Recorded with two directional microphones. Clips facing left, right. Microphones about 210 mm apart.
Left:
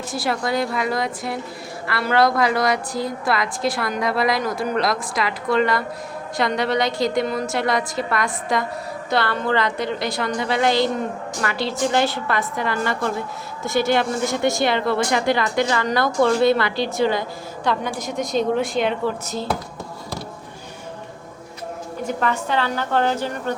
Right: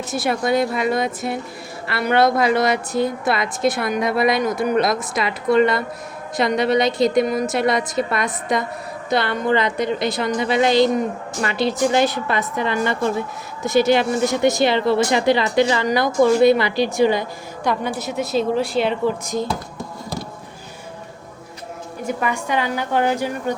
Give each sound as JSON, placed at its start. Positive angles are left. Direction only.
{"t": 0.1, "sound": "a woman's voice", "side_deg": -20}
{"t": 19.0, "sound": "a woman's voice", "side_deg": -15}
{"t": 22.0, "sound": "a woman's voice", "side_deg": -10}